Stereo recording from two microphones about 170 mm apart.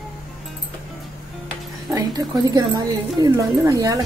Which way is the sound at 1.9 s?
25° right (ahead or behind).